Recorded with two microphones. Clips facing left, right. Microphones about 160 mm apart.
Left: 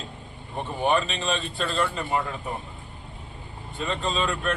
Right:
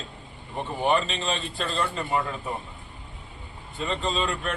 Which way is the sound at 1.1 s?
Centre (ahead or behind).